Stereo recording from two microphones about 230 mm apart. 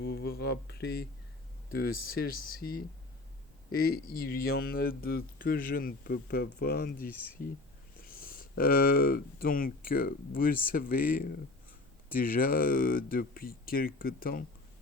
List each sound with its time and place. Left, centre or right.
0.0 s speech: left